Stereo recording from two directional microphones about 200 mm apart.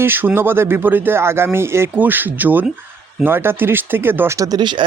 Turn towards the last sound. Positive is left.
turn(degrees=-20)  # may be behind; listen again after turning